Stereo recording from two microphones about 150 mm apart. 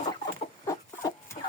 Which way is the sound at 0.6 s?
30° left (ahead or behind).